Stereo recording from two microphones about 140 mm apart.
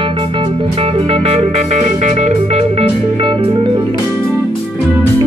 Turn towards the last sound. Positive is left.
turn(degrees=-35)  # may be behind; listen again after turning